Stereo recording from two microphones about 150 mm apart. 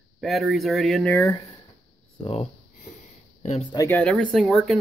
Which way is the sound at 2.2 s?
40° left (ahead or behind).